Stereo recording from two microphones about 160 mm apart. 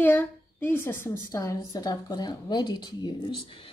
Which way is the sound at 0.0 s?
10° left (ahead or behind).